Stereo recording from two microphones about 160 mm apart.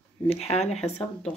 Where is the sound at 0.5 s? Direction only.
40° left (ahead or behind).